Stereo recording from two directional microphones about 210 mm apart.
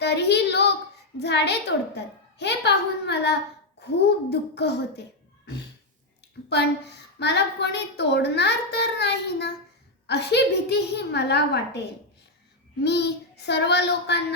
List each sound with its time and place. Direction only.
0.0 s a sound: 55° left (ahead or behind)
1.2 s speech: 55° left (ahead or behind)
6.5 s speech: 50° left (ahead or behind)
12.8 s speech: 55° left (ahead or behind)